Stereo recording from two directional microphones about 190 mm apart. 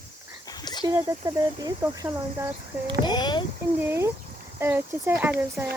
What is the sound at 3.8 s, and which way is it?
Speech, 10° right (ahead or behind).